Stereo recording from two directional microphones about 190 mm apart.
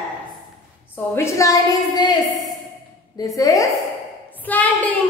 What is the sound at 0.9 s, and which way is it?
A woman's voice, 15° left (ahead or behind).